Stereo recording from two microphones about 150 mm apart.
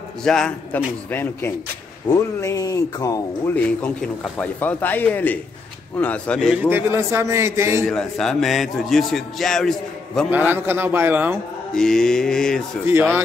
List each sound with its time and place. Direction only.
0.2 s a man's voice: 5° left (ahead or behind); by 3.5 s 25° left (ahead or behind)
3.5 s a man's voice: 10° left (ahead or behind)
6.5 s a man's voice: 15° right (ahead or behind)
7.9 s a man's voice: 5° left (ahead or behind)
10.3 s a man's voice: 15° right (ahead or behind)
11.7 s a man's voice: 5° left (ahead or behind)